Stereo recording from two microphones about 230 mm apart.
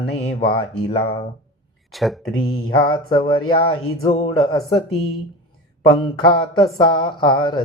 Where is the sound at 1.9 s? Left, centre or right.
Centre.